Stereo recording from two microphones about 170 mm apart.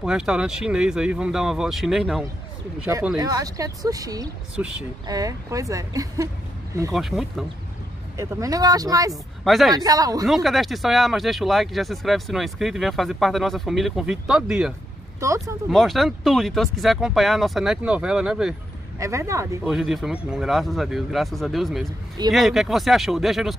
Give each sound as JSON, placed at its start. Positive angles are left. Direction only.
{"t": 0.0, "sound": "speech", "side_deg": -5}
{"t": 3.2, "sound": "speech", "side_deg": -20}
{"t": 6.9, "sound": "speech", "side_deg": 0}
{"t": 8.2, "sound": "speech", "side_deg": -20}
{"t": 9.1, "sound": "speech", "side_deg": 0}
{"t": 9.8, "sound": "speech", "side_deg": -20}
{"t": 10.2, "sound": "speech", "side_deg": 0}
{"t": 15.1, "sound": "speech", "side_deg": -20}
{"t": 15.7, "sound": "speech", "side_deg": 0}
{"t": 18.9, "sound": "speech", "side_deg": -15}
{"t": 19.6, "sound": "speech", "side_deg": -5}